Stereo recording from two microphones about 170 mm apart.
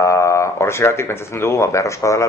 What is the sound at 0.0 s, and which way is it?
A man's voice, 15° left (ahead or behind).